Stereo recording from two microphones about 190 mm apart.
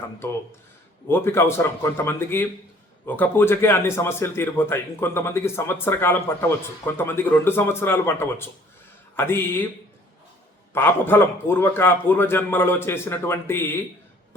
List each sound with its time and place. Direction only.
1.0 s a man's voice: 10° left (ahead or behind)
10.8 s a man's voice: 10° left (ahead or behind)